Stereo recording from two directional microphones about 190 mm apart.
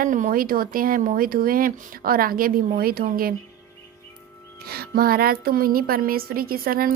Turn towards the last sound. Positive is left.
turn(degrees=-50)  # may be behind; listen again after turning